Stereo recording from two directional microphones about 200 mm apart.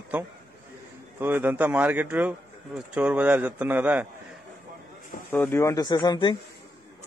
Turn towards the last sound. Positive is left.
turn(degrees=20)  # may be behind; listen again after turning